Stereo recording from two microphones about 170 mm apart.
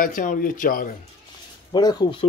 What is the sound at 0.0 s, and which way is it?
Speech, 50° left (ahead or behind).